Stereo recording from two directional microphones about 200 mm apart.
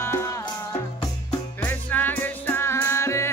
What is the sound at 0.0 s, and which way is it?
Music, 10° left (ahead or behind).